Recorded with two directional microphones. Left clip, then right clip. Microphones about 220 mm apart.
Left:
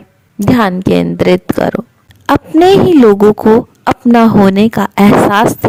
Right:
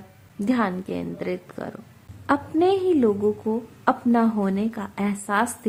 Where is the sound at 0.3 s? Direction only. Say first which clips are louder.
Left 13 dB; 45° left (ahead or behind).